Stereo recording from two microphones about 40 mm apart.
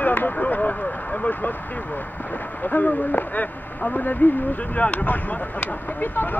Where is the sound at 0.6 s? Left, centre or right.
Left.